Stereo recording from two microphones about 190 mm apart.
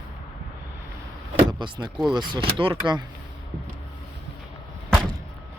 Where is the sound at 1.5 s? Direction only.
25° right (ahead or behind).